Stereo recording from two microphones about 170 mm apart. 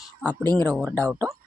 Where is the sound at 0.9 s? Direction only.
10° left (ahead or behind).